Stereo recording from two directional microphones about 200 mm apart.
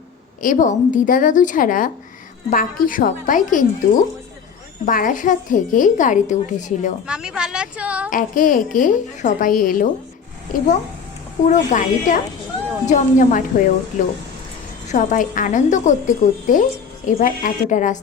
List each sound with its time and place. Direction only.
0.4 s a woman's voice: 40° left (ahead or behind)
7.1 s a woman's voice: 5° right (ahead or behind)
8.1 s a woman's voice: 40° left (ahead or behind)
11.4 s a woman's voice: 40° left (ahead or behind)